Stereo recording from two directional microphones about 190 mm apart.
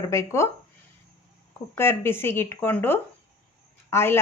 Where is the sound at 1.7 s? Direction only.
10° left (ahead or behind).